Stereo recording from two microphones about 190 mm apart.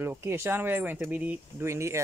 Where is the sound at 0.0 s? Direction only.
15° right (ahead or behind).